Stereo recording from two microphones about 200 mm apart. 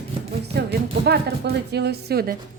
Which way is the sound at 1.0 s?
55° right (ahead or behind).